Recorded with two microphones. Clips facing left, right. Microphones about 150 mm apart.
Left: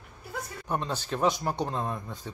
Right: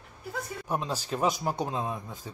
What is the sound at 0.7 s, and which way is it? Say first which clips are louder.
Speech: left 1 dB; 5° right (ahead or behind).